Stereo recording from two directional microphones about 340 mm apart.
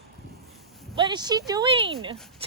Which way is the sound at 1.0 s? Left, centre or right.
Centre.